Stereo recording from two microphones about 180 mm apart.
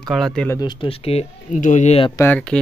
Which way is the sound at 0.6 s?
25° left (ahead or behind).